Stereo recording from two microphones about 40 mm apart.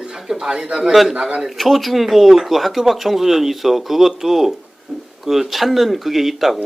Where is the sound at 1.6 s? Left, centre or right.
Centre.